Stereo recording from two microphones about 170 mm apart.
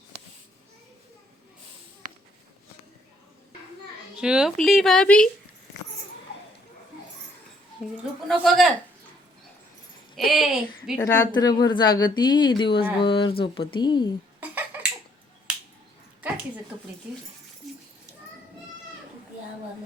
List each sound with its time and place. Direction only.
4.2 s speech: 5° right (ahead or behind)
7.8 s a woman's voice: centre (ahead or behind)
10.2 s speech: centre (ahead or behind)
11.0 s speech: 25° left (ahead or behind)
14.4 s finger snapping: 10° right (ahead or behind)